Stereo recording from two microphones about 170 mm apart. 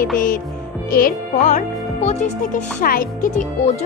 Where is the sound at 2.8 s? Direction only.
55° left (ahead or behind).